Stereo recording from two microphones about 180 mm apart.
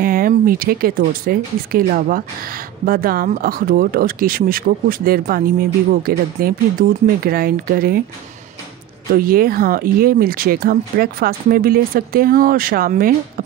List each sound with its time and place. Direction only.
0.0 s speech: 50° right (ahead or behind)
9.1 s speech: 55° right (ahead or behind)